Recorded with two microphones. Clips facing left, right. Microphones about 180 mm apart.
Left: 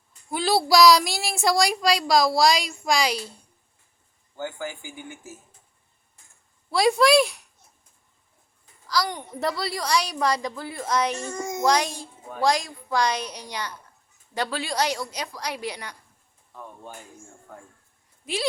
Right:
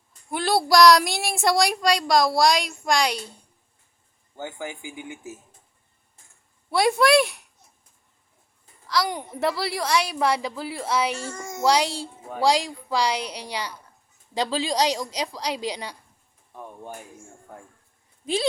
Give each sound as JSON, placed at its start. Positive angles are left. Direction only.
{"t": 0.3, "sound": "speech", "side_deg": 0}
{"t": 4.4, "sound": "a woman's voice", "side_deg": -20}
{"t": 6.7, "sound": "speech", "side_deg": 0}
{"t": 8.9, "sound": "a woman's voice", "side_deg": -5}
{"t": 11.2, "sound": "a child's voice", "side_deg": 15}
{"t": 11.6, "sound": "a woman's voice", "side_deg": -10}